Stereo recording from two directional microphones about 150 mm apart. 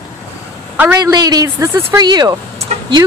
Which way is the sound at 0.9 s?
25° right (ahead or behind).